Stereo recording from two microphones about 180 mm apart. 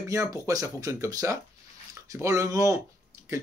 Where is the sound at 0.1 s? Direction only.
20° right (ahead or behind).